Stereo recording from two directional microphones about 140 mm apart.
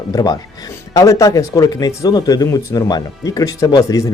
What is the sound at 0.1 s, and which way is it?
Speech, 25° left (ahead or behind).